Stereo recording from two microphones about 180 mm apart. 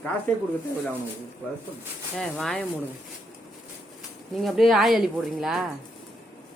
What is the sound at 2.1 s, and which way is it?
Speech, 5° left (ahead or behind).